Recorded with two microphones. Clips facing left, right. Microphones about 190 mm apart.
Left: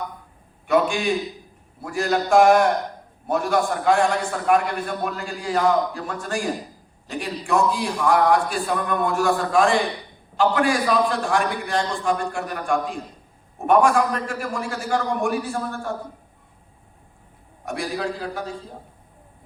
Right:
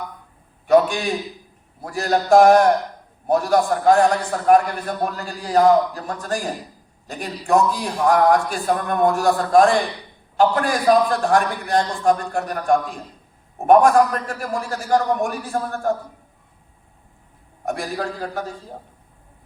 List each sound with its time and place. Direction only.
0.7 s a man's voice: 40° right (ahead or behind)
17.7 s a man's voice: 45° right (ahead or behind)